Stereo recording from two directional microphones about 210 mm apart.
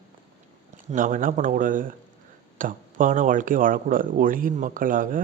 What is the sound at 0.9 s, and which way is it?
Speech, 40° right (ahead or behind).